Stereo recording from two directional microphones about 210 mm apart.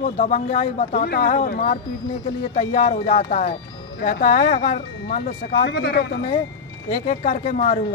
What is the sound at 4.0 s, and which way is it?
Speech, 45° left (ahead or behind).